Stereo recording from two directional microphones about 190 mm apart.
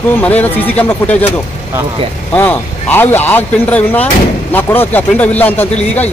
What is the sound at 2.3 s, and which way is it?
Speech, 10° left (ahead or behind).